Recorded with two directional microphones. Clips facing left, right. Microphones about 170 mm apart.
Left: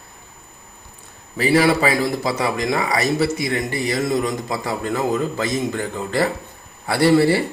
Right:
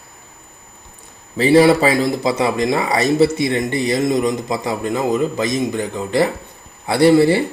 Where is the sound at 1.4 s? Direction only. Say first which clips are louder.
Right 5 dB; 25° right (ahead or behind).